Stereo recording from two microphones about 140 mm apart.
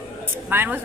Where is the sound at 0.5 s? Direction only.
15° right (ahead or behind).